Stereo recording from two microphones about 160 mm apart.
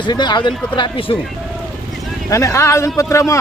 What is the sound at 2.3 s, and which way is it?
Speech, 20° left (ahead or behind).